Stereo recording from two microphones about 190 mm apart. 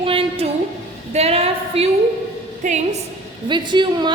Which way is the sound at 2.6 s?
35° right (ahead or behind).